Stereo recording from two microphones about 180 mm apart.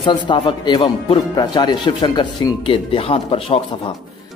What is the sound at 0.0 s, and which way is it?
Speech, 25° left (ahead or behind).